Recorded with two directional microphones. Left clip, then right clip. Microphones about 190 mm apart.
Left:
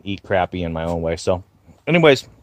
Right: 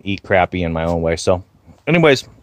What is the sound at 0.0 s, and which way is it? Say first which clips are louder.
Speech: right 5 dB; 20° right (ahead or behind).